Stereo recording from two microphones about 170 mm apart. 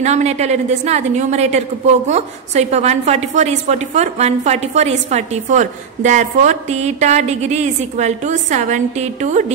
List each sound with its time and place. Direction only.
0.0 s a woman's voice: 40° right (ahead or behind)